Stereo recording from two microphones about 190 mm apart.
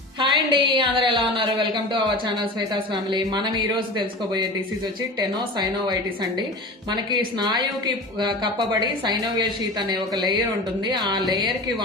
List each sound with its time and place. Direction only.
0.2 s a woman's voice: 25° right (ahead or behind)
5.5 s a woman's voice: 20° right (ahead or behind)